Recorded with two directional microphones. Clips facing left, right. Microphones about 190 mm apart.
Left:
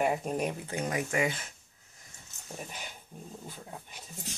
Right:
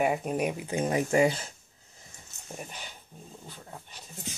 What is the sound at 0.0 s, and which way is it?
Speech, 5° right (ahead or behind).